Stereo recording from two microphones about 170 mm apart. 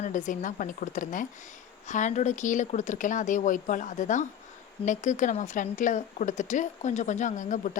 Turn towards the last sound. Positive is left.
turn(degrees=50)  # may be behind; listen again after turning